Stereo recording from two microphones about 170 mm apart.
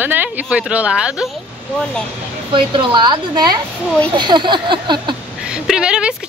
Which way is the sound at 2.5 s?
30° right (ahead or behind).